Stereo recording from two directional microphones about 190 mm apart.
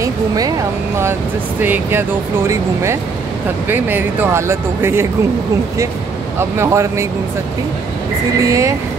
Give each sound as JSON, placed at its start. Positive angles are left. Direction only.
{"t": 1.6, "sound": "speech", "side_deg": -10}
{"t": 6.6, "sound": "speech", "side_deg": -15}
{"t": 8.4, "sound": "speech", "side_deg": -15}